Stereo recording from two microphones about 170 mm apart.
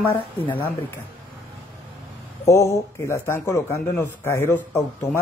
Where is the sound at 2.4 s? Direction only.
15° left (ahead or behind).